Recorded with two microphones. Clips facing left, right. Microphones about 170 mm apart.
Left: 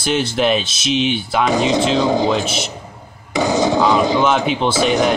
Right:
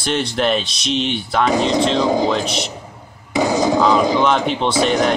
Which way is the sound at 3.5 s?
25° left (ahead or behind).